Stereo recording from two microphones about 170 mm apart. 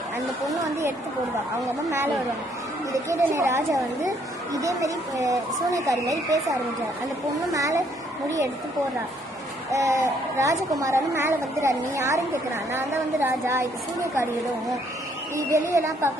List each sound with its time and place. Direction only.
0.4 s speech: 20° right (ahead or behind)
2.9 s a woman's voice: 20° right (ahead or behind)
9.7 s a woman's voice: 20° right (ahead or behind)
15.4 s a woman's voice: 15° right (ahead or behind)